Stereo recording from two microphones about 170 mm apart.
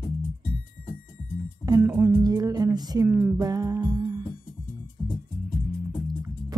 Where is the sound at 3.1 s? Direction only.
5° right (ahead or behind).